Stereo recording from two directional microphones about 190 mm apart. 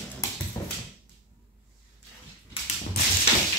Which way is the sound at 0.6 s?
15° left (ahead or behind).